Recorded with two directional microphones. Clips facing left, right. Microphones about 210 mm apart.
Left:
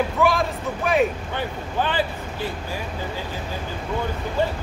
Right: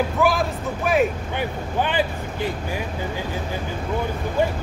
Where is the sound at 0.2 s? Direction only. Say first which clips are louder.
Even; centre (ahead or behind).